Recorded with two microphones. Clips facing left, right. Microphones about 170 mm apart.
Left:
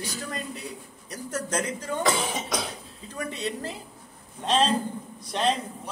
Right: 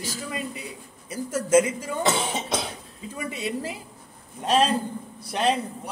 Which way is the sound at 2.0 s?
25° right (ahead or behind).